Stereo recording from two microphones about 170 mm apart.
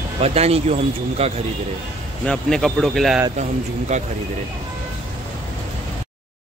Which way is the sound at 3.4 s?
45° right (ahead or behind).